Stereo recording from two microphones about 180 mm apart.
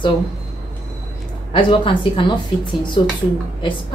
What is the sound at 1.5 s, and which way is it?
Speech, 25° left (ahead or behind).